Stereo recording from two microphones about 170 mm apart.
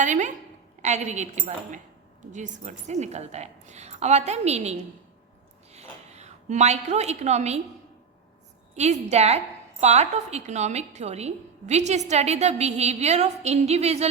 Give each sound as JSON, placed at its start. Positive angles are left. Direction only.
{"t": 0.0, "sound": "a sound", "side_deg": -45}
{"t": 0.8, "sound": "a woman's voice", "side_deg": -40}
{"t": 8.7, "sound": "a woman's voice", "side_deg": -40}